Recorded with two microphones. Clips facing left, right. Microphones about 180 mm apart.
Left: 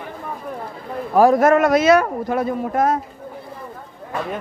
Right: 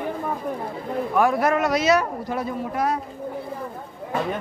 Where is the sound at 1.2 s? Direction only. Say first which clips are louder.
Left 7 dB; 40° left (ahead or behind).